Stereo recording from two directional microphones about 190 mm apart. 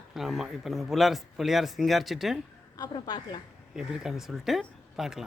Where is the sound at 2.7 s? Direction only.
20° left (ahead or behind).